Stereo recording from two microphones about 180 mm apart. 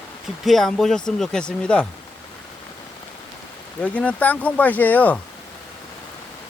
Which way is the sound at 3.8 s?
10° left (ahead or behind).